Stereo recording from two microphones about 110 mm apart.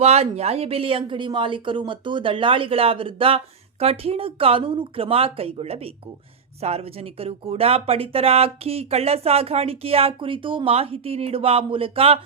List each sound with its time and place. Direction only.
0.0 s speech: 70° right (ahead or behind)